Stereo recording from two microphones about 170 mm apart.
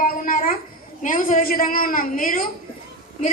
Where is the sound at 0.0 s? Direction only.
55° left (ahead or behind).